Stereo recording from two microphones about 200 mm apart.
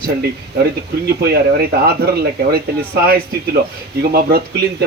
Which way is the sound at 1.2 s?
50° right (ahead or behind).